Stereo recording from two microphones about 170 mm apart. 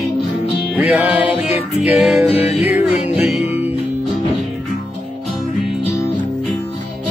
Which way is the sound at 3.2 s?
40° left (ahead or behind).